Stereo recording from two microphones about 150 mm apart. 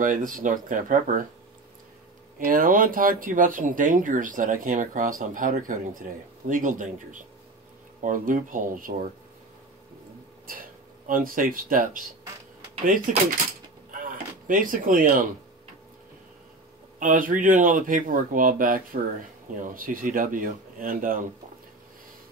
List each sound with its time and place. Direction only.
0.0 s speech: 60° right (ahead or behind)
2.3 s speech: 70° right (ahead or behind)
11.1 s speech: 70° right (ahead or behind)
13.9 s a sound: 65° right (ahead or behind)
17.0 s speech: 65° right (ahead or behind)